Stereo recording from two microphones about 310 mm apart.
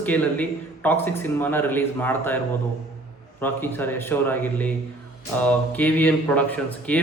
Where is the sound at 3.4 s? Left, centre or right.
Centre.